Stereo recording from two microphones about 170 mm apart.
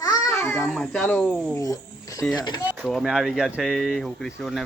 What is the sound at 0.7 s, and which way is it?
Speech, 5° left (ahead or behind).